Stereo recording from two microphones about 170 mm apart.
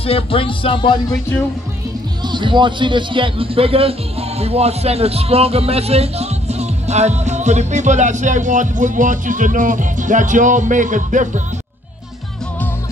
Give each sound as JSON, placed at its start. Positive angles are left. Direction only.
{"t": 0.0, "sound": "music", "side_deg": 35}
{"t": 2.2, "sound": "a man's voice", "side_deg": -25}